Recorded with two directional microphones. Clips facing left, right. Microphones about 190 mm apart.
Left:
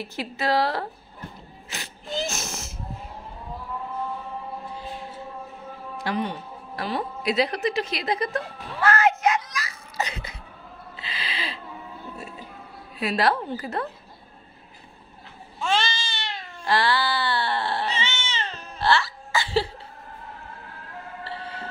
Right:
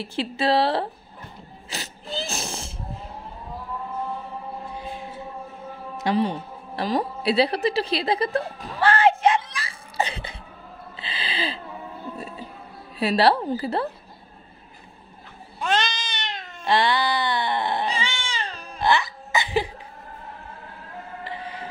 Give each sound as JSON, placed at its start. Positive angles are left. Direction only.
{"t": 0.0, "sound": "speech", "side_deg": -30}
{"t": 1.7, "sound": "a sound", "side_deg": -30}
{"t": 5.9, "sound": "music", "side_deg": -25}
{"t": 11.0, "sound": "owl", "side_deg": -30}
{"t": 13.0, "sound": "a woman's voice", "side_deg": -30}
{"t": 15.6, "sound": "cat", "side_deg": -20}
{"t": 21.2, "sound": "music", "side_deg": -15}